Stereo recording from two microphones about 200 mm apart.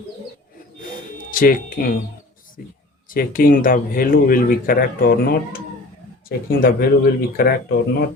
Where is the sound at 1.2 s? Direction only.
45° left (ahead or behind).